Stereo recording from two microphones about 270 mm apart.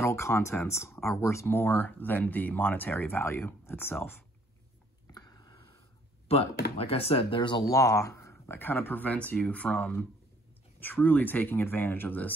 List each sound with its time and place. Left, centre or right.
0.0 s speech: centre
5.0 s a sound: centre
6.2 s speech: left